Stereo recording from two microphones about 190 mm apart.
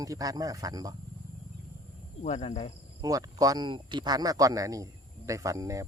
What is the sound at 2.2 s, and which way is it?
Speech, 35° left (ahead or behind).